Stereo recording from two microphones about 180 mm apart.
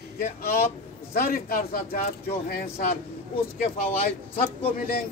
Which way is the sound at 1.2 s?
55° left (ahead or behind).